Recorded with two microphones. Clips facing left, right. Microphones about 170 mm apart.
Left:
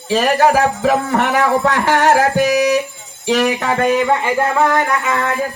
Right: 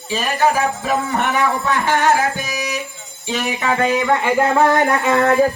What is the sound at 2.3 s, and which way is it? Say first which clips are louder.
Music: left 12 dB; 70° left (ahead or behind).